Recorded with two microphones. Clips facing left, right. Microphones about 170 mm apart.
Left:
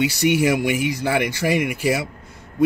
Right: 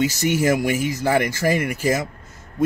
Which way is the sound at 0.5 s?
45° right (ahead or behind).